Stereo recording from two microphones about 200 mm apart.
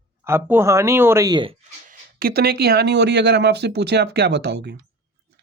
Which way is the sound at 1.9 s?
50° right (ahead or behind).